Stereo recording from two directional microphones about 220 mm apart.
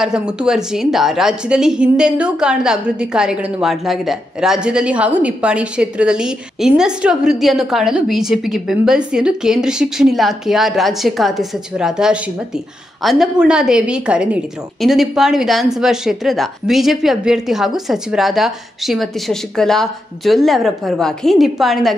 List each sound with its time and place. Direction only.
0.0 s a woman's voice: 5° right (ahead or behind)